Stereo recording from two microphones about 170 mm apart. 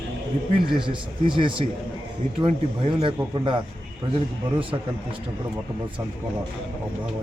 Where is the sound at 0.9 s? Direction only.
30° right (ahead or behind).